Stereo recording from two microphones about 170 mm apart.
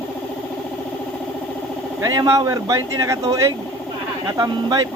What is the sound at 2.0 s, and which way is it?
Speech, 20° right (ahead or behind).